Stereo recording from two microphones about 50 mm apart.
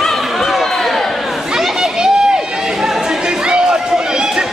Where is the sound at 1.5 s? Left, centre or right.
Centre.